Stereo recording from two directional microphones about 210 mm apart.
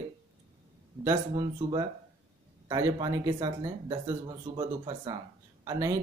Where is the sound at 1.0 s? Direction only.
20° right (ahead or behind).